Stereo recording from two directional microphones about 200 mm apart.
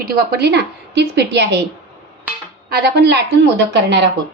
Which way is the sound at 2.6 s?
50° right (ahead or behind).